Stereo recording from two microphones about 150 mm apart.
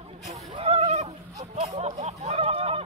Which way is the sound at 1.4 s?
40° right (ahead or behind).